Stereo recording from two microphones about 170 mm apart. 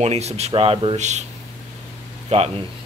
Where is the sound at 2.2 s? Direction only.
35° right (ahead or behind).